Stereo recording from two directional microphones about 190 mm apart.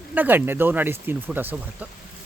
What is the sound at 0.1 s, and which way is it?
Speech, 10° right (ahead or behind).